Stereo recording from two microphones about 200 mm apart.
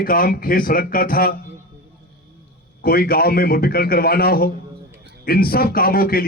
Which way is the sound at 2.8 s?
50° left (ahead or behind).